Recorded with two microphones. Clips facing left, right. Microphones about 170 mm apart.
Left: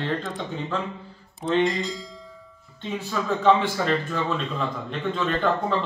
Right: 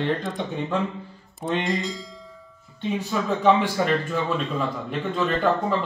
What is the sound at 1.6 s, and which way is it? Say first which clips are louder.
Speech: left 3 dB; centre (ahead or behind).